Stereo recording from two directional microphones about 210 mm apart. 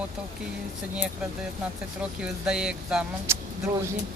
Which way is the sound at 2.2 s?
5° right (ahead or behind).